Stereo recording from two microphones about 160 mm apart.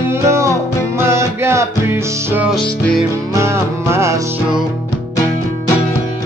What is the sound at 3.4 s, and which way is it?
Music, 15° right (ahead or behind).